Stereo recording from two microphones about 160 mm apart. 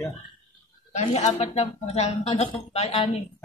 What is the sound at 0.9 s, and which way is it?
Speech, 45° left (ahead or behind).